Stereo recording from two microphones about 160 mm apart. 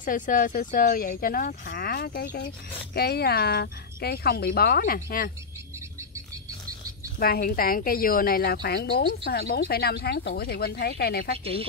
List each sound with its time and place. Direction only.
0.0 s speech: 55° left (ahead or behind)
7.2 s a woman's voice: 70° left (ahead or behind)